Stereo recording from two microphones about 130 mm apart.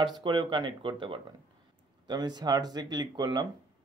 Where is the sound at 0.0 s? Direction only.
35° right (ahead or behind).